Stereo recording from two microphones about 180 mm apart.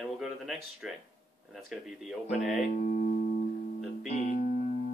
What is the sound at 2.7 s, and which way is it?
Music, 45° left (ahead or behind).